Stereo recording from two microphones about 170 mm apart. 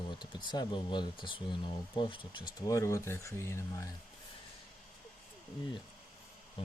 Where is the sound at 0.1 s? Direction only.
25° left (ahead or behind).